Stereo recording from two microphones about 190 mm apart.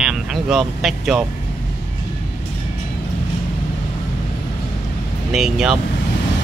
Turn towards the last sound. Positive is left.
turn(degrees=-5)  # may be behind; listen again after turning